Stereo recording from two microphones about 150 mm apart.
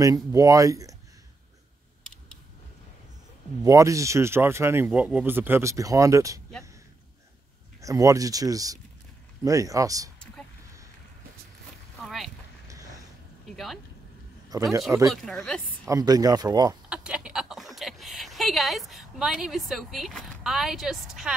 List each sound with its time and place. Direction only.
0.0 s speech: 25° right (ahead or behind)
3.6 s speech: 20° right (ahead or behind)
7.8 s speech: 20° right (ahead or behind)
12.0 s boat: centre (ahead or behind)
12.6 s a sound: 20° right (ahead or behind)
14.5 s a man's voice: 25° right (ahead or behind)
15.2 s a woman's voice: 5° left (ahead or behind)
15.9 s speech: 25° right (ahead or behind)
16.9 s a sound: 5° right (ahead or behind)